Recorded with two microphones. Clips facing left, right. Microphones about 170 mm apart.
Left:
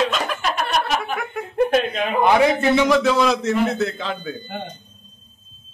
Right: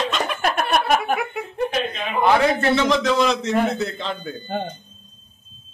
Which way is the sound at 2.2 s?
15° left (ahead or behind).